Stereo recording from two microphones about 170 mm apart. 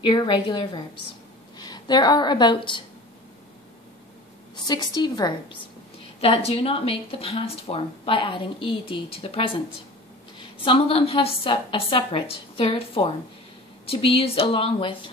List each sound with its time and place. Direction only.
0.0 s a woman's voice: 25° left (ahead or behind)
4.6 s a woman's voice: 25° left (ahead or behind)
6.2 s a woman's voice: 35° left (ahead or behind)
10.6 s a woman's voice: 30° left (ahead or behind)